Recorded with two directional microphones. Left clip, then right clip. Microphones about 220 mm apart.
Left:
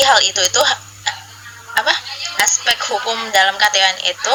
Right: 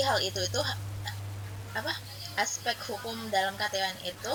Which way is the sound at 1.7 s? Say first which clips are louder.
Left 18 dB; 40° left (ahead or behind).